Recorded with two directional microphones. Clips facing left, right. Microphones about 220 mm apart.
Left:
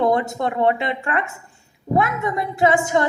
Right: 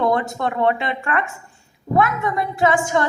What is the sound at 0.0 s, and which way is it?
A woman's voice, 20° left (ahead or behind).